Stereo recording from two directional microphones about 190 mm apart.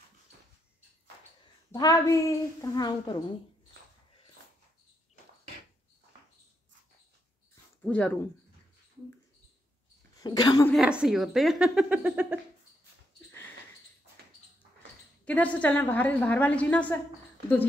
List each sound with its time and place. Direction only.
1.7 s a woman's voice: 20° left (ahead or behind)
7.8 s speech: 5° left (ahead or behind)
10.2 s a woman's voice: 20° left (ahead or behind)
10.7 s speech: 5° right (ahead or behind)
15.2 s a woman's voice: 10° left (ahead or behind)